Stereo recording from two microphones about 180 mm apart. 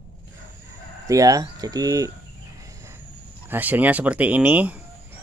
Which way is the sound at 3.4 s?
10° right (ahead or behind).